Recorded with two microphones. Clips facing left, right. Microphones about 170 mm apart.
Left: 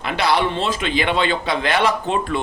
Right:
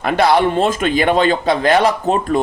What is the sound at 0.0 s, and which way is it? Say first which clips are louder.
A man's voice: right 6 dB; 50° right (ahead or behind).